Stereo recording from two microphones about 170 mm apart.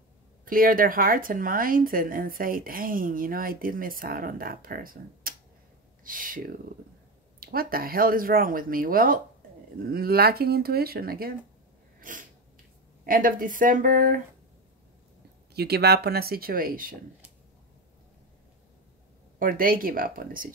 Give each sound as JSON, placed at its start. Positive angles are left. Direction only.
{"t": 0.5, "sound": "speech", "side_deg": -55}
{"t": 12.0, "sound": "sneeze", "side_deg": -50}
{"t": 13.0, "sound": "speech", "side_deg": -55}
{"t": 15.5, "sound": "speech", "side_deg": -70}
{"t": 19.3, "sound": "speech", "side_deg": -55}